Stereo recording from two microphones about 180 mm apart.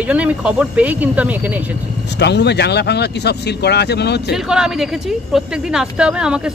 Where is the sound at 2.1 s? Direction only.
70° left (ahead or behind).